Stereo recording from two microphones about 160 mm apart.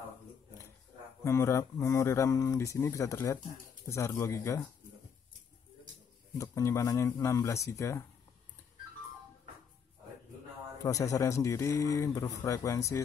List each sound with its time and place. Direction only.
1.2 s speech: 15° left (ahead or behind)
6.3 s speech: 20° left (ahead or behind)
10.8 s speech: 20° left (ahead or behind)